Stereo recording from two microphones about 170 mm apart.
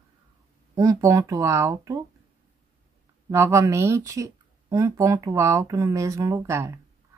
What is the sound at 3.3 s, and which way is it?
Speech, 15° right (ahead or behind).